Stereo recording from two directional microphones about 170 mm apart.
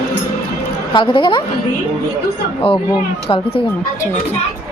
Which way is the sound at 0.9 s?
30° left (ahead or behind).